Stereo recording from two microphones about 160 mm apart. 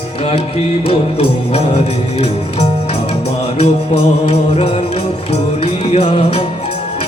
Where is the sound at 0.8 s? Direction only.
40° left (ahead or behind).